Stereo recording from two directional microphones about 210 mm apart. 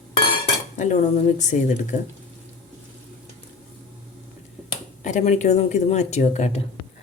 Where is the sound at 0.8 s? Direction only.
35° left (ahead or behind).